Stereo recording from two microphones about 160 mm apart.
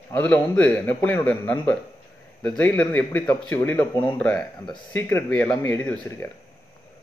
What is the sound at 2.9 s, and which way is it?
Speech, 20° left (ahead or behind).